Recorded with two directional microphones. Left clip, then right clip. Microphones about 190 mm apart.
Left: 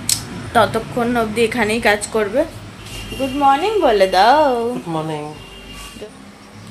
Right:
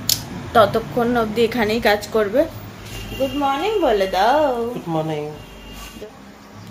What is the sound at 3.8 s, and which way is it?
Speech, 45° left (ahead or behind).